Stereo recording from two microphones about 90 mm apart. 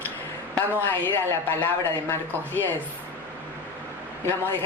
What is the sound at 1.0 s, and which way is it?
Speech, 25° left (ahead or behind).